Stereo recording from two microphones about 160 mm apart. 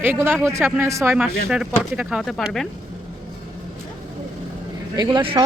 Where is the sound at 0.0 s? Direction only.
15° right (ahead or behind).